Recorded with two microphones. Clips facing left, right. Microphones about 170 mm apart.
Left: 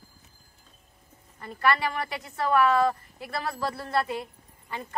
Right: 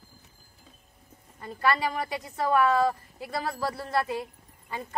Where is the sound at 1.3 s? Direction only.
15° right (ahead or behind).